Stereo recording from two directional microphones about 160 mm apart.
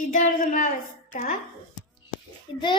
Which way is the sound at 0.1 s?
50° left (ahead or behind).